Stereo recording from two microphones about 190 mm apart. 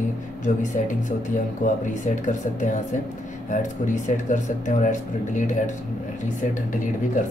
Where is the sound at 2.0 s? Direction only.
40° left (ahead or behind).